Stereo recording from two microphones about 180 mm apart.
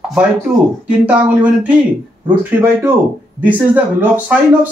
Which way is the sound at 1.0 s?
5° right (ahead or behind).